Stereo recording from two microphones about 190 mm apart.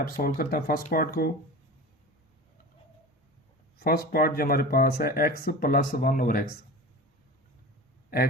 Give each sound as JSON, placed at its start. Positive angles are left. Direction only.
{"t": 0.0, "sound": "speech", "side_deg": 50}
{"t": 3.8, "sound": "speech", "side_deg": 50}